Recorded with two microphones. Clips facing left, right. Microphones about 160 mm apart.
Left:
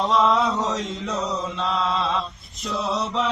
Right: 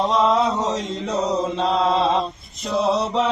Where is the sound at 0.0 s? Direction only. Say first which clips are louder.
Right 2 dB; centre (ahead or behind).